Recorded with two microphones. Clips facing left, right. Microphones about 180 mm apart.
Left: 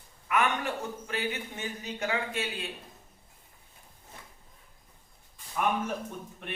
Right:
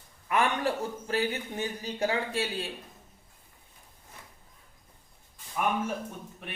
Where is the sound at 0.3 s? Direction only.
35° right (ahead or behind).